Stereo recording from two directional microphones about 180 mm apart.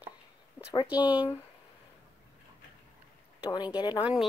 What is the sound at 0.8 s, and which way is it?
Speech, 10° right (ahead or behind).